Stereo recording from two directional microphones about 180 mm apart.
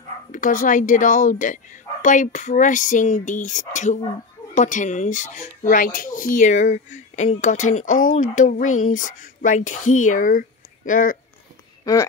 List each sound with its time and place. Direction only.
0.3 s a woman's voice: 45° left (ahead or behind)
11.8 s speech: 20° left (ahead or behind)